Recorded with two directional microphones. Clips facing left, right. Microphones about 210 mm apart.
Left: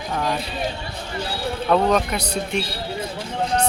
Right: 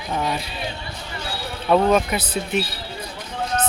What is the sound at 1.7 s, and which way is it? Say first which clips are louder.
Speech: right 2 dB; 5° right (ahead or behind).